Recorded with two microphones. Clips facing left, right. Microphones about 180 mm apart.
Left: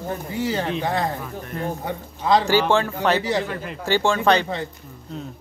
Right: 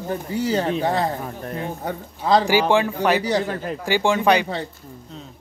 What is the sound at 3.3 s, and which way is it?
Speech, 40° right (ahead or behind).